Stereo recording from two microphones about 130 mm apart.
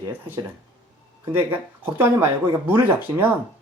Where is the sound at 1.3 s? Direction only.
15° right (ahead or behind).